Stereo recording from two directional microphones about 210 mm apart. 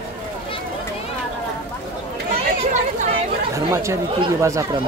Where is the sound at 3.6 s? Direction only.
15° right (ahead or behind).